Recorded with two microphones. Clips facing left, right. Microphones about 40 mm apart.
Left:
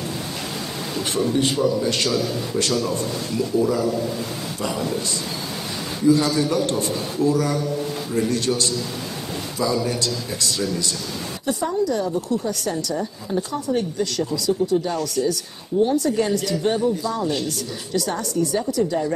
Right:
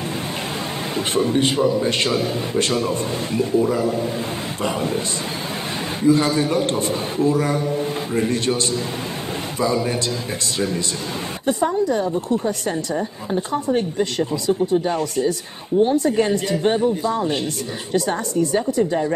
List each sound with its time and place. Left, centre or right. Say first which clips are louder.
0.9 s a man's voice: right 2 dB; right
6.0 s a man's voice: right 1 dB; right
11.4 s a man's voice: right 3 dB; right